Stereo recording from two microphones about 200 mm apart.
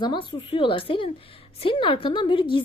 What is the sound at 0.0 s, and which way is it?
A woman's voice, 25° left (ahead or behind).